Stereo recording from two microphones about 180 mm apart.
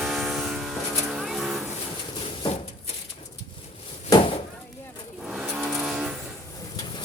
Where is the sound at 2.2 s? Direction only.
30° left (ahead or behind).